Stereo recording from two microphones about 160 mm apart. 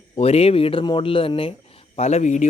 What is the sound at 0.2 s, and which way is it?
Speech, 40° left (ahead or behind).